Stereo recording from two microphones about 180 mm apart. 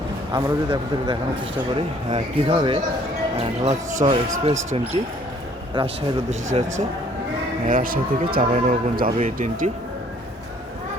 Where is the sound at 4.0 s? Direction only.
30° right (ahead or behind).